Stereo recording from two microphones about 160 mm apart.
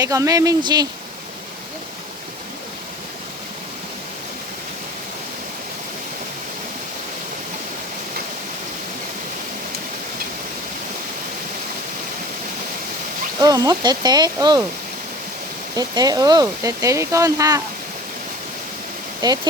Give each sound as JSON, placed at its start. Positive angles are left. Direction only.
{"t": 0.0, "sound": "speech", "side_deg": -20}
{"t": 13.4, "sound": "speech", "side_deg": -25}
{"t": 15.7, "sound": "speech", "side_deg": -25}